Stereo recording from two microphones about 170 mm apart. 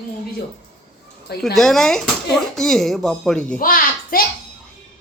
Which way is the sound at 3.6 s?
55° left (ahead or behind).